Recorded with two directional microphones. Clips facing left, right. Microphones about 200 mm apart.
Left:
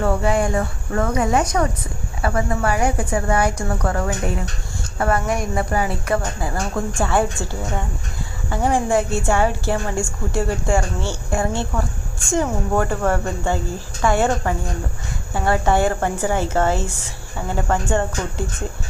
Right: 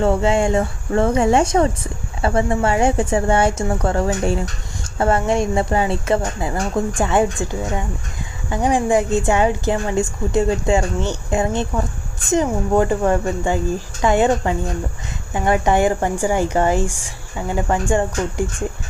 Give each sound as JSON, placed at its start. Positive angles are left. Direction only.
{"t": 0.0, "sound": "a woman's voice", "side_deg": -25}